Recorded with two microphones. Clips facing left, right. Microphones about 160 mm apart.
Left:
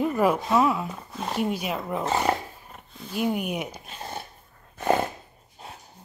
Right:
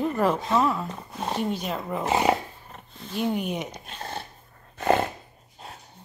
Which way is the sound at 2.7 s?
5° left (ahead or behind).